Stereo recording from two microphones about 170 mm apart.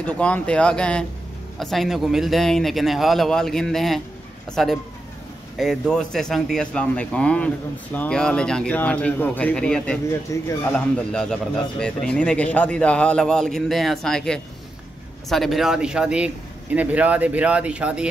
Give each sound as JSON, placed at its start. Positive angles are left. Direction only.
{"t": 0.0, "sound": "a man's voice", "side_deg": 5}
{"t": 10.3, "sound": "speech", "side_deg": 20}
{"t": 10.7, "sound": "a man's voice", "side_deg": 5}